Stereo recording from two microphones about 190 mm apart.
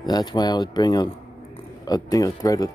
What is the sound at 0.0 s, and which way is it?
Speech, 20° left (ahead or behind).